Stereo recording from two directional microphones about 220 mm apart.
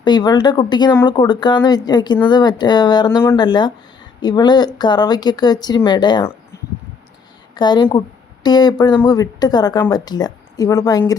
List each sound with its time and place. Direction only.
0.0 s speech: 20° left (ahead or behind)
6.5 s a sound: 15° left (ahead or behind)
7.5 s a woman's voice: 20° left (ahead or behind)